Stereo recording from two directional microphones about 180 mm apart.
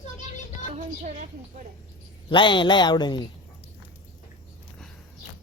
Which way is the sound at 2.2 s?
25° left (ahead or behind).